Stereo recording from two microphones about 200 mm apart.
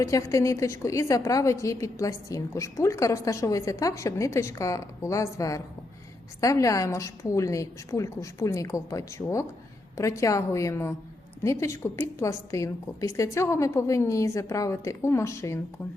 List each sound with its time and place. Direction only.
0.0 s a woman's voice: 15° left (ahead or behind)